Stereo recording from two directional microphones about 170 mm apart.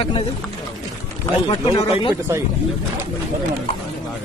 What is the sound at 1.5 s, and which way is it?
Speech, 25° left (ahead or behind).